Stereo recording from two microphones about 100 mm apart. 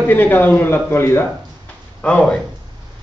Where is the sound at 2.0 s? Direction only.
10° left (ahead or behind).